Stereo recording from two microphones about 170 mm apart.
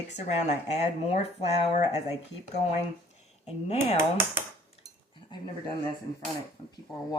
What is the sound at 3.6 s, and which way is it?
Speech, 35° left (ahead or behind).